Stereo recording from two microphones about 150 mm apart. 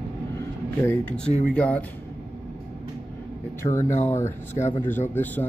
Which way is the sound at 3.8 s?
55° left (ahead or behind).